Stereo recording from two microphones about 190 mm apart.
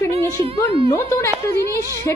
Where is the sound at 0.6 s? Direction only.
30° right (ahead or behind).